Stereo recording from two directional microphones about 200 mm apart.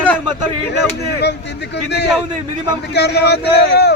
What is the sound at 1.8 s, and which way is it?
A man's voice, 55° left (ahead or behind).